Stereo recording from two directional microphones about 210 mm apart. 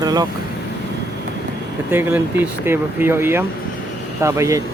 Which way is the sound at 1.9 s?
10° right (ahead or behind).